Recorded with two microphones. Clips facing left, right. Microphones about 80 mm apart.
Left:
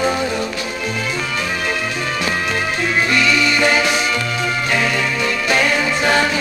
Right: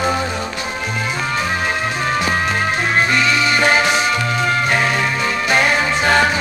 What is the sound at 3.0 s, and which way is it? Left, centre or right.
Music, centre.